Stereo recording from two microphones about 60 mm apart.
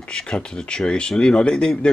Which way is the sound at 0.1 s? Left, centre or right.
Centre.